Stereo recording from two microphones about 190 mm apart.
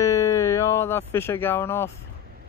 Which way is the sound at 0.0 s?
15° left (ahead or behind).